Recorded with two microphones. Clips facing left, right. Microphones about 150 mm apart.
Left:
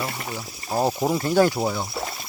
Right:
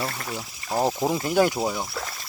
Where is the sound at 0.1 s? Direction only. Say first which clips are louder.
Left 1 dB; 10° left (ahead or behind).